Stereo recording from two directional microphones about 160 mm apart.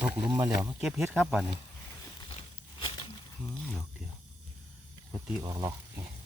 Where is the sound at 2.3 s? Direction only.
35° left (ahead or behind).